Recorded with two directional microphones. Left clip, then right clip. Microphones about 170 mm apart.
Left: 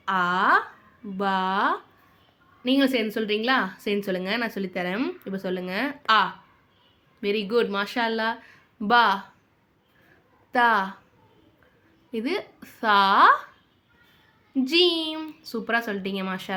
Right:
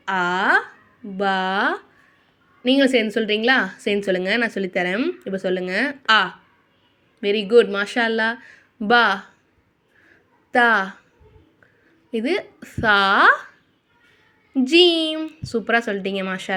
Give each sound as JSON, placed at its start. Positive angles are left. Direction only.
{"t": 0.0, "sound": "a sound", "side_deg": -20}
{"t": 1.1, "sound": "a woman's voice", "side_deg": -20}
{"t": 10.5, "sound": "a woman's voice", "side_deg": -20}
{"t": 12.1, "sound": "a woman's voice", "side_deg": -20}
{"t": 14.5, "sound": "a woman's voice", "side_deg": -20}